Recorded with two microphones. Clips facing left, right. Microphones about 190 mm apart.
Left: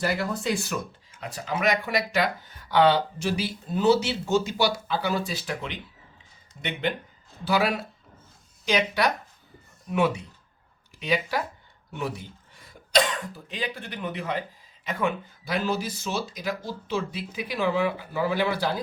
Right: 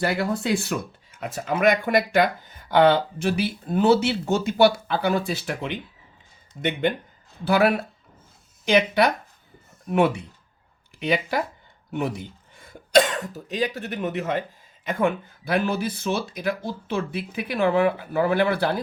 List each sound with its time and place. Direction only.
0.0 s speech: 60° right (ahead or behind)